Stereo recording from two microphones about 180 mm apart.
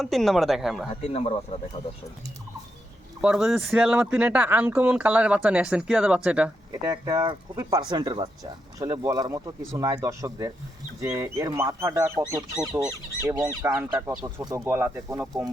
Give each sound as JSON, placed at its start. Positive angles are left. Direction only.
{"t": 0.0, "sound": "speech", "side_deg": 0}
{"t": 1.0, "sound": "speech", "side_deg": 35}
{"t": 3.2, "sound": "speech", "side_deg": -5}
{"t": 6.8, "sound": "speech", "side_deg": -20}